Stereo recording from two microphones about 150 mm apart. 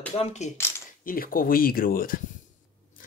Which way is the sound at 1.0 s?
75° left (ahead or behind).